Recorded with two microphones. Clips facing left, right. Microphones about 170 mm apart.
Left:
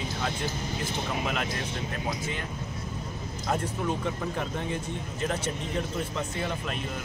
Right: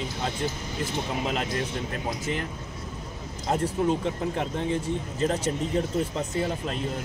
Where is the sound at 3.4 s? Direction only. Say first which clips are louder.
Right 5 dB; 25° right (ahead or behind).